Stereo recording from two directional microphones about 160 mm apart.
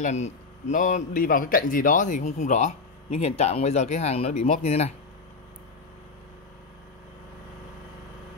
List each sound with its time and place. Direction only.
0.0 s speech: 45° left (ahead or behind)